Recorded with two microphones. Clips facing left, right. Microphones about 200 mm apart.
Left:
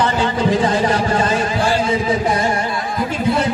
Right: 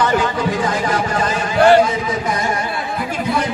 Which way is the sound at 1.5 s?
65° right (ahead or behind).